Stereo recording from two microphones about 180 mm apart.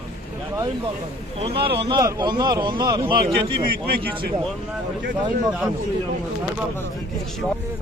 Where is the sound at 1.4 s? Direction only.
30° right (ahead or behind).